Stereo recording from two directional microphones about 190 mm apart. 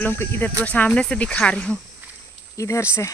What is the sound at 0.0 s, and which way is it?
Speech, 10° left (ahead or behind).